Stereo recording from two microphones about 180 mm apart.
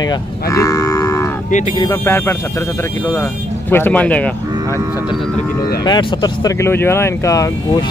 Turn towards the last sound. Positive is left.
turn(degrees=20)  # may be behind; listen again after turning